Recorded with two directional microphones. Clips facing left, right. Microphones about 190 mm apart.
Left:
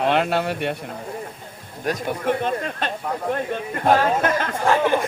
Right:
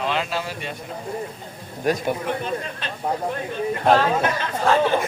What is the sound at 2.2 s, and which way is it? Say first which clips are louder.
Speech: left 4 dB; 50° left (ahead or behind).